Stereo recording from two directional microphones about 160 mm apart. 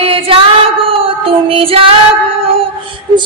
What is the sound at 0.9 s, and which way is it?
Music, 35° right (ahead or behind).